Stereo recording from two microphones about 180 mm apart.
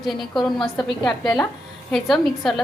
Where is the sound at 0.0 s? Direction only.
Centre (ahead or behind).